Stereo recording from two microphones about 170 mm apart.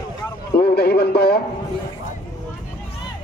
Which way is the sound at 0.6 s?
70° left (ahead or behind).